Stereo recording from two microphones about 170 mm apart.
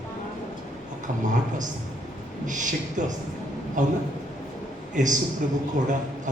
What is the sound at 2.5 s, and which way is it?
A woman's voice, 50° right (ahead or behind).